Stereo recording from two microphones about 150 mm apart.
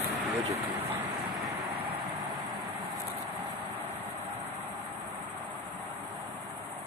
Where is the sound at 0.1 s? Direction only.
45° right (ahead or behind).